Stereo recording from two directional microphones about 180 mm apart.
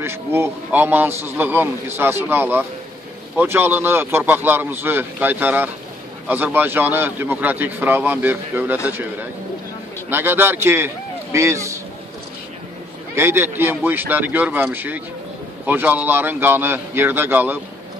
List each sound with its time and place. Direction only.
0.0 s a man's voice: 15° right (ahead or behind)
10.0 s a man's voice: 10° right (ahead or behind)
13.1 s a man's voice: 15° right (ahead or behind)